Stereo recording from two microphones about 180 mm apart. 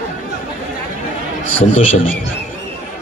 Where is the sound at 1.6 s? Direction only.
45° left (ahead or behind).